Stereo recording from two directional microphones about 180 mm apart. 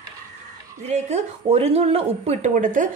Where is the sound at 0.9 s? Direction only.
35° right (ahead or behind).